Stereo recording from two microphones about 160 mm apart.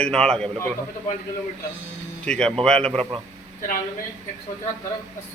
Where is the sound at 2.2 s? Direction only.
5° left (ahead or behind).